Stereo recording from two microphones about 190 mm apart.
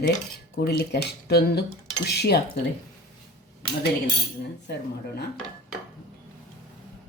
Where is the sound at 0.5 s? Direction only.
55° left (ahead or behind).